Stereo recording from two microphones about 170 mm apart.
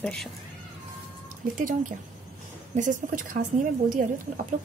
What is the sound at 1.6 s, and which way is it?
Speech, 50° right (ahead or behind).